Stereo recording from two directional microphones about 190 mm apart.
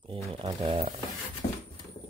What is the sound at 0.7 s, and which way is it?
Speech, 30° right (ahead or behind).